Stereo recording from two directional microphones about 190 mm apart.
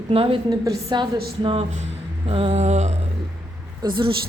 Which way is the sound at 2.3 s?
30° right (ahead or behind).